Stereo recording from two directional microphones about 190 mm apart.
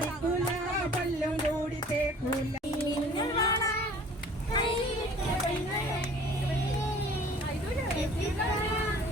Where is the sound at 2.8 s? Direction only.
20° left (ahead or behind).